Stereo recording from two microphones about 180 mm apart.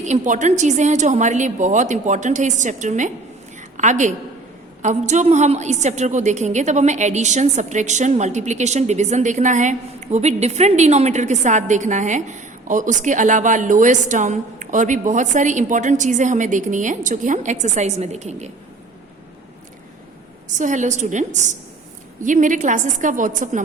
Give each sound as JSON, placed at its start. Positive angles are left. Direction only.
{"t": 0.0, "sound": "a woman's voice", "side_deg": -40}
{"t": 20.6, "sound": "a woman's voice", "side_deg": -45}